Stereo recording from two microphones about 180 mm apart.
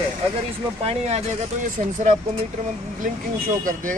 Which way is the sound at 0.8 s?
35° right (ahead or behind).